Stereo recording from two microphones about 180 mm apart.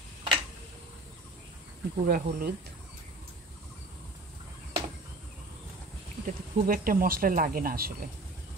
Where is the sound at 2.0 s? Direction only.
55° right (ahead or behind).